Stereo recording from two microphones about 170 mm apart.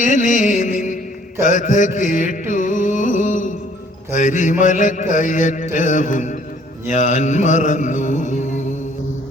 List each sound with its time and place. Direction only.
0.0 s music: 50° left (ahead or behind)